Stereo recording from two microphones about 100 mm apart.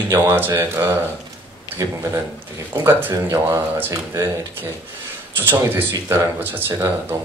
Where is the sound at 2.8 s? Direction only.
25° right (ahead or behind).